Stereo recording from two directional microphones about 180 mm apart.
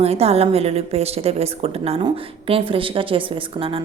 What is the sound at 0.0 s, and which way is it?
A woman's voice, 35° right (ahead or behind).